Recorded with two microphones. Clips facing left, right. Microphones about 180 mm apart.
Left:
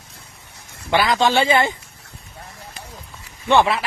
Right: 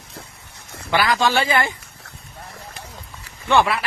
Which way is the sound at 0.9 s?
20° left (ahead or behind).